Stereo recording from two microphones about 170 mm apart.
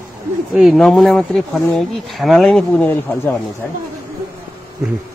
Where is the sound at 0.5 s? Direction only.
Centre (ahead or behind).